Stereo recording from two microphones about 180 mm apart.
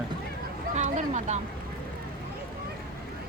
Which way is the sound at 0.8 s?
40° right (ahead or behind).